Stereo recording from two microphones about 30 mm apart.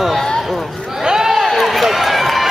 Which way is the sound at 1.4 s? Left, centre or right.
Centre.